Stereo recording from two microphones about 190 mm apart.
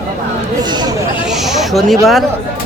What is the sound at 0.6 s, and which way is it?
Speech, 20° right (ahead or behind).